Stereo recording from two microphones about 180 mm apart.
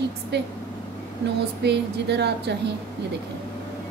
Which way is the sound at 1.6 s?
70° right (ahead or behind).